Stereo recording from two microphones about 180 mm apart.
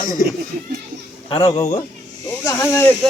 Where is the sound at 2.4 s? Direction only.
15° left (ahead or behind).